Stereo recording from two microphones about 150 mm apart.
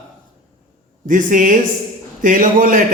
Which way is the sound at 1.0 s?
60° right (ahead or behind).